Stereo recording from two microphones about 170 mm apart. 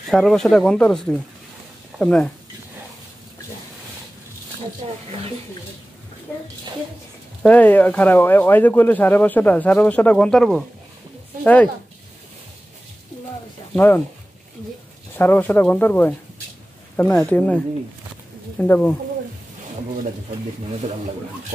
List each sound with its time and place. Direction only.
0.1 s speech: centre (ahead or behind)
4.8 s speech: 35° right (ahead or behind)
7.4 s speech: 10° left (ahead or behind)
13.7 s speech: 10° left (ahead or behind)
15.1 s speech: 10° left (ahead or behind)
18.6 s speech: 10° left (ahead or behind)